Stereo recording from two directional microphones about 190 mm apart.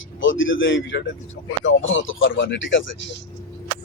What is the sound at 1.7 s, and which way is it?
Speech, 90° left.